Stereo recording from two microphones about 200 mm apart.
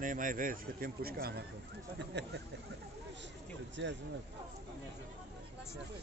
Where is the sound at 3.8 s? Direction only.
60° right (ahead or behind).